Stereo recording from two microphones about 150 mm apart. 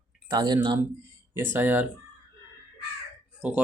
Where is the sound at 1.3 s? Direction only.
15° right (ahead or behind).